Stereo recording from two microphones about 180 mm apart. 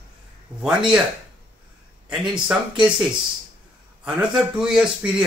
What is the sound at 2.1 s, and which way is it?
Speech, 5° right (ahead or behind).